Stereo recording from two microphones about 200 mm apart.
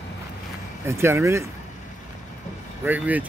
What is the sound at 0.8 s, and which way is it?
Speech, 15° right (ahead or behind).